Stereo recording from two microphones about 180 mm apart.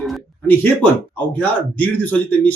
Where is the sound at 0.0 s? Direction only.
Centre (ahead or behind).